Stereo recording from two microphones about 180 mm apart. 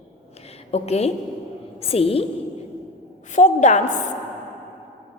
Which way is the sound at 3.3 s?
45° left (ahead or behind).